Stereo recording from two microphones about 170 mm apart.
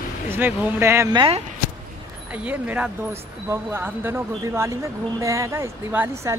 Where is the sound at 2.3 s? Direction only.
10° right (ahead or behind).